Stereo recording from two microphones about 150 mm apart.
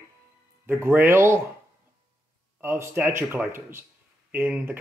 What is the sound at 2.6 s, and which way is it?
Speech, 15° right (ahead or behind).